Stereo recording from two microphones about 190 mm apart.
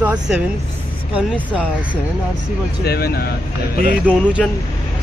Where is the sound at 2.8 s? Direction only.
55° left (ahead or behind).